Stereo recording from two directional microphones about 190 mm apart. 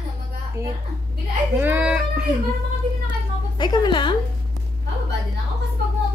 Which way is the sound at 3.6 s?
25° left (ahead or behind).